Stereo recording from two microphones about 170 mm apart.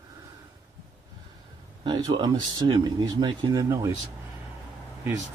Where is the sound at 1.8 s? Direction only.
25° right (ahead or behind).